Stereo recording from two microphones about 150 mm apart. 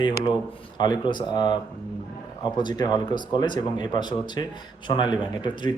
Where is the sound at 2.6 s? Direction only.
30° left (ahead or behind).